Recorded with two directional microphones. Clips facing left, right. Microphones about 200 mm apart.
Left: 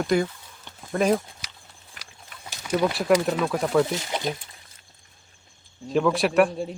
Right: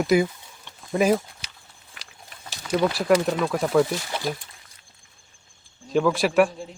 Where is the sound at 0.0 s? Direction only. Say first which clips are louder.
Right 3 dB; 5° right (ahead or behind).